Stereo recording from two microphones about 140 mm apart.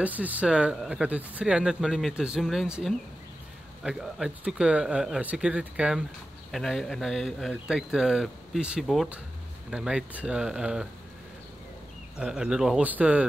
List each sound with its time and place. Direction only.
0.0 s speech: 10° right (ahead or behind)
12.2 s speech: 5° right (ahead or behind)